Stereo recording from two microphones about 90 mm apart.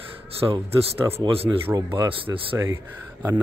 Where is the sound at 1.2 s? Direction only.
90° right.